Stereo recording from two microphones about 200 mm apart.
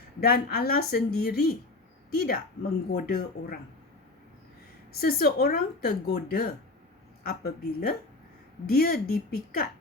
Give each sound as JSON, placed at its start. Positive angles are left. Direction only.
{"t": 0.2, "sound": "speech", "side_deg": 50}
{"t": 4.9, "sound": "speech", "side_deg": 50}